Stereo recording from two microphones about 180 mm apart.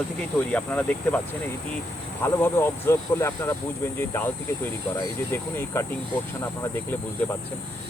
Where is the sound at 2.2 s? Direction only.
15° left (ahead or behind).